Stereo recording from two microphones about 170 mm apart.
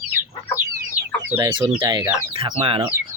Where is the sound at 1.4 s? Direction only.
30° right (ahead or behind).